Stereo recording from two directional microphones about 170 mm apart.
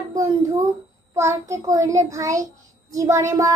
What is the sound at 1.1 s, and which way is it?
Child singing, 15° right (ahead or behind).